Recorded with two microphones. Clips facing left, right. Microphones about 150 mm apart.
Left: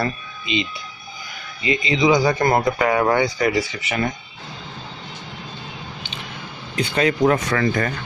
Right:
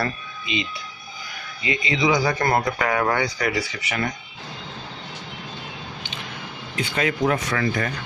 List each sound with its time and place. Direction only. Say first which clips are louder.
0.0 s speech: left 2 dB; 25° left (ahead or behind)
6.7 s speech: left 5 dB; 35° left (ahead or behind)